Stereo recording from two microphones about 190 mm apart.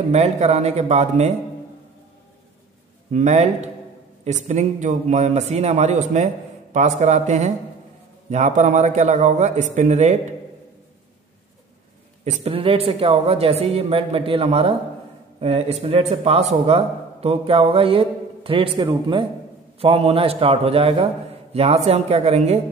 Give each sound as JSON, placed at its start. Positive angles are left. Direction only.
{"t": 0.1, "sound": "a man's voice", "side_deg": -35}
{"t": 3.1, "sound": "a man's voice", "side_deg": -40}
{"t": 12.3, "sound": "a man's voice", "side_deg": -30}